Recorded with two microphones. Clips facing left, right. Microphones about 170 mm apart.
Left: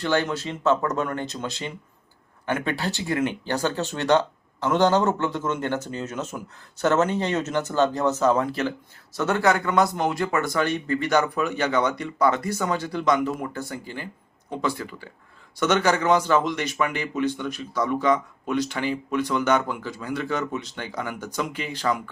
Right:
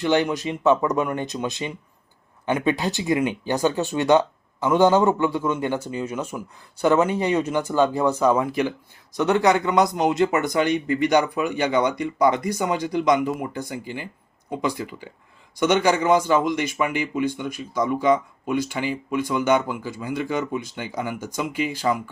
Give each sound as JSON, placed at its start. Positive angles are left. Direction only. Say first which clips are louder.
{"t": 0.0, "sound": "speech", "louder": "right 3 dB", "side_deg": -15}